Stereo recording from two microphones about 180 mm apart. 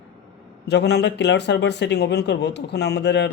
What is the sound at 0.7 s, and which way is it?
Speech, 70° left (ahead or behind).